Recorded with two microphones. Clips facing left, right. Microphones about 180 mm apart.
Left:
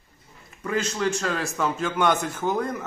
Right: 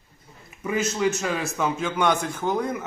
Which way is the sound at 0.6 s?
5° right (ahead or behind).